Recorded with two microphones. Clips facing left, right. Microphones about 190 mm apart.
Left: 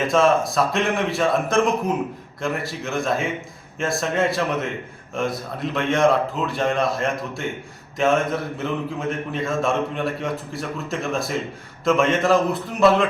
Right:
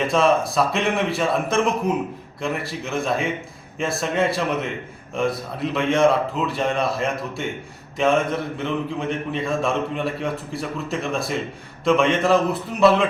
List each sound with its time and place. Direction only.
0.0 s a man's voice: centre (ahead or behind)